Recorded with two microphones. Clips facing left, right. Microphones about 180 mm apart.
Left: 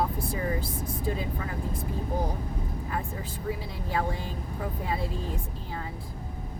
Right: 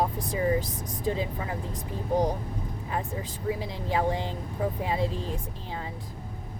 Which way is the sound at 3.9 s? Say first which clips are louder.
Right 3 dB; 20° right (ahead or behind).